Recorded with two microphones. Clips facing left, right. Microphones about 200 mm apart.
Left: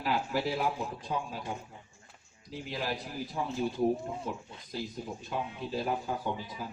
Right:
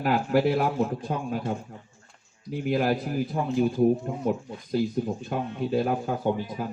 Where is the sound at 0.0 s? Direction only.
55° right (ahead or behind).